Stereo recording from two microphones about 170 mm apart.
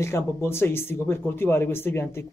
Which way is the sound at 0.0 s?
15° left (ahead or behind).